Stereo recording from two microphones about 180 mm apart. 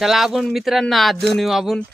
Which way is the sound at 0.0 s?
Centre (ahead or behind).